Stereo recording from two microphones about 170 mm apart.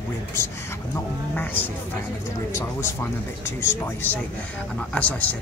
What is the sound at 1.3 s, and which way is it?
Speech, 10° left (ahead or behind).